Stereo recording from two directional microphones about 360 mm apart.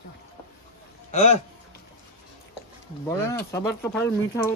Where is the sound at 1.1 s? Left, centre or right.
Centre.